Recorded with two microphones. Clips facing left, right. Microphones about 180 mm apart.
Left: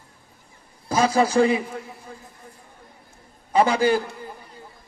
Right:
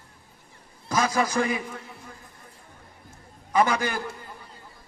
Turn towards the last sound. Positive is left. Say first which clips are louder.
# left 5 dB
turn(degrees=30)  # may be behind; listen again after turning